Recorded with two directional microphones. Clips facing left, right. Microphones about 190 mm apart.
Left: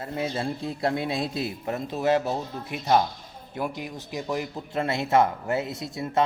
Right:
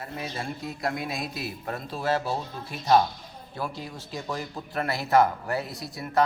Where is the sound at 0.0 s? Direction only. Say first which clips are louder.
Left 6 dB; 25° left (ahead or behind).